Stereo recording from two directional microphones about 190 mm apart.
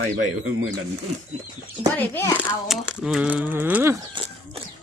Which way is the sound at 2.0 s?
10° left (ahead or behind).